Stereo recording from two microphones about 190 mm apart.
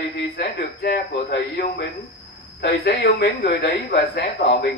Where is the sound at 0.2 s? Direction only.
60° left (ahead or behind).